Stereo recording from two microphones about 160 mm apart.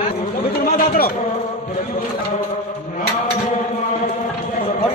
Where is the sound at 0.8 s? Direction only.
65° left (ahead or behind).